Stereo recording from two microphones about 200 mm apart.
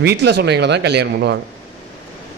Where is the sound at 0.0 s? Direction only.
55° right (ahead or behind).